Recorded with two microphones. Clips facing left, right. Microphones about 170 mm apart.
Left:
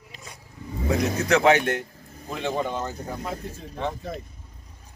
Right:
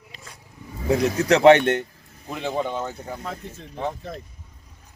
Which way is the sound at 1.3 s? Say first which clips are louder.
Right 6 dB; 30° right (ahead or behind).